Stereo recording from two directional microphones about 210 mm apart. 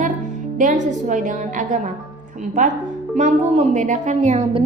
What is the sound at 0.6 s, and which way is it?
A woman's voice, 35° right (ahead or behind).